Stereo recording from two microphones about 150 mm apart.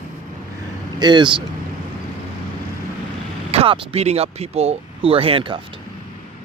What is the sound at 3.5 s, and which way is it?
Speech, 40° right (ahead or behind).